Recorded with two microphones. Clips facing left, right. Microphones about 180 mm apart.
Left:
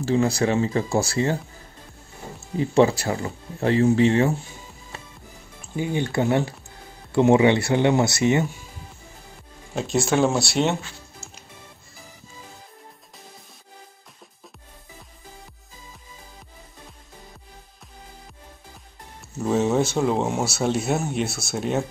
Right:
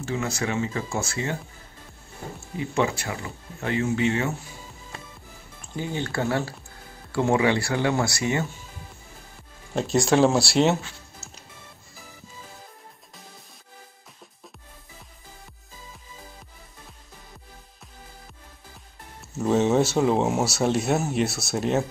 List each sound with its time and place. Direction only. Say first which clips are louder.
0.0 s speech: left 7 dB; 35° left (ahead or behind)
2.5 s speech: left 7 dB; 35° left (ahead or behind)
5.6 s speech: left 4 dB; 15° left (ahead or behind)
9.8 s speech: right 1 dB; centre (ahead or behind)
19.4 s speech: even; centre (ahead or behind)